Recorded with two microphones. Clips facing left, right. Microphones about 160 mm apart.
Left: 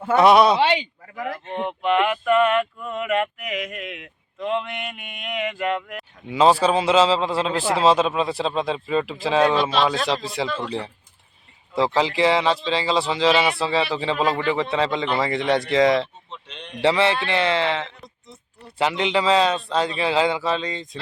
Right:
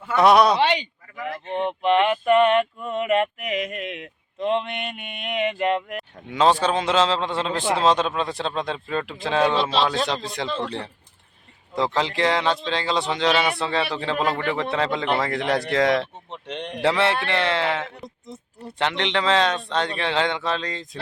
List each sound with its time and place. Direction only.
0.2 s a man's voice: centre (ahead or behind)
1.5 s mantra: 30° right (ahead or behind)
6.2 s a man's voice: 5° left (ahead or behind)
16.3 s speech: 70° right (ahead or behind)
16.8 s a man's voice: centre (ahead or behind)